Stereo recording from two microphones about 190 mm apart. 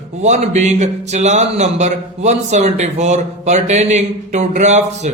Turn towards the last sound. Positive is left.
turn(degrees=-35)  # may be behind; listen again after turning